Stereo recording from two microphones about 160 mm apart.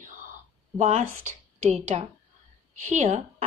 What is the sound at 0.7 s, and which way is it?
A woman's voice, 45° right (ahead or behind).